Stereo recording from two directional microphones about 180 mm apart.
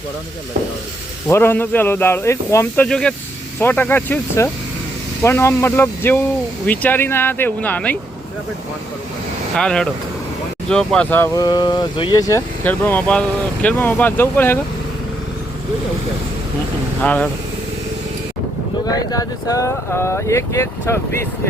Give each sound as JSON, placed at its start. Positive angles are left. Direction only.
{"t": 1.3, "sound": "speech", "side_deg": 10}
{"t": 2.8, "sound": "speech", "side_deg": 5}
{"t": 9.6, "sound": "speech", "side_deg": 5}
{"t": 17.0, "sound": "speech", "side_deg": 10}
{"t": 18.9, "sound": "speech", "side_deg": 20}